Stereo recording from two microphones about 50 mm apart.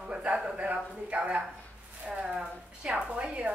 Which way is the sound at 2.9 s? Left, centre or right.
Right.